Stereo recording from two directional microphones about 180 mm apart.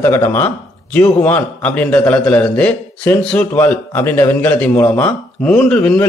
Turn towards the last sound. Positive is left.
turn(degrees=5)  # may be behind; listen again after turning